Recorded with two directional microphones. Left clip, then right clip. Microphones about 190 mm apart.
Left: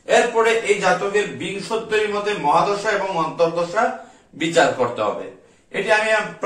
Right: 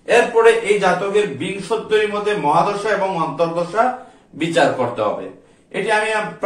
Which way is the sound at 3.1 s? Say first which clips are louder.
Even; 15° left (ahead or behind).